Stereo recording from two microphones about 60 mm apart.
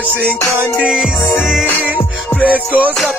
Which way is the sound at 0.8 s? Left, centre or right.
Centre.